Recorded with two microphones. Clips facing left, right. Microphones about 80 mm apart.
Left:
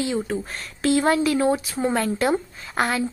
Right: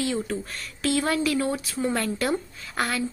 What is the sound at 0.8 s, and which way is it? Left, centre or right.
Speech, left.